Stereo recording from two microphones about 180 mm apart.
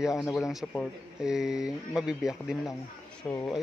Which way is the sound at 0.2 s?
Centre (ahead or behind).